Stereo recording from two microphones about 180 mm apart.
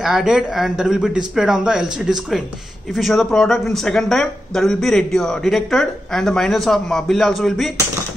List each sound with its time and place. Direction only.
0.0 s speech: centre (ahead or behind)